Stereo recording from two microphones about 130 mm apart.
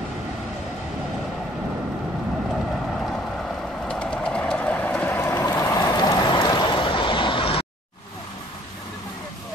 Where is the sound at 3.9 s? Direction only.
5° left (ahead or behind); by 7.7 s 45° left (ahead or behind).